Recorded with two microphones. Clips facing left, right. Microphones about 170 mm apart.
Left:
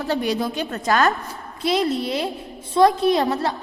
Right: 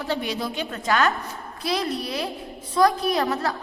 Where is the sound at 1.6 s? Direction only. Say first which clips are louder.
Left 5 dB; 25° left (ahead or behind).